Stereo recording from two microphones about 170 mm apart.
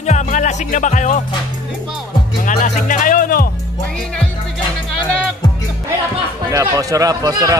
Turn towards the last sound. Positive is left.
turn(degrees=-20)  # may be behind; listen again after turning